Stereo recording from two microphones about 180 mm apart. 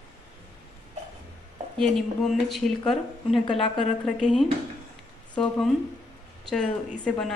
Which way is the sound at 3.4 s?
30° left (ahead or behind).